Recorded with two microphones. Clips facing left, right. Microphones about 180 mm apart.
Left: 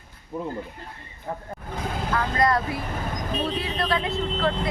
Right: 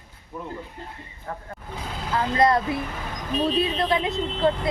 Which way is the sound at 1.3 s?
15° left (ahead or behind).